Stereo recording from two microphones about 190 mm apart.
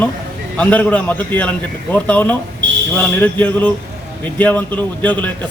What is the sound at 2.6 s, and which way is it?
Fire alarm, 70° right (ahead or behind).